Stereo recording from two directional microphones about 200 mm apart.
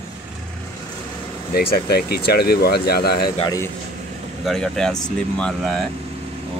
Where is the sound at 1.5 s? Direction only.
50° left (ahead or behind).